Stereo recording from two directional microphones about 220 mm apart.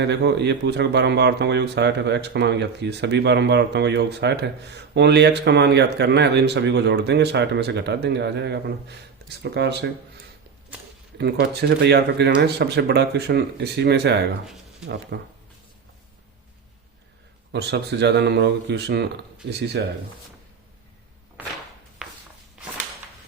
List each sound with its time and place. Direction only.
0.0 s speech: 50° right (ahead or behind)
11.2 s speech: 50° right (ahead or behind)
14.4 s a sound: 5° right (ahead or behind)
15.1 s speech: 50° right (ahead or behind)
17.5 s speech: 50° right (ahead or behind)
22.0 s a sound: 5° right (ahead or behind)